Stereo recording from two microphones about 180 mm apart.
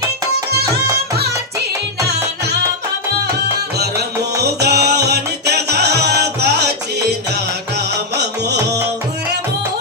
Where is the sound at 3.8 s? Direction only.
65° right (ahead or behind).